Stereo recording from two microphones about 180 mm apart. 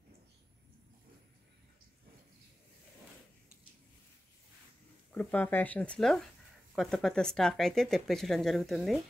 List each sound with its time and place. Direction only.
5.1 s speech: 10° left (ahead or behind)